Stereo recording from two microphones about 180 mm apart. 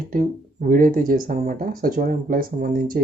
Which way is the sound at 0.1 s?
50° right (ahead or behind).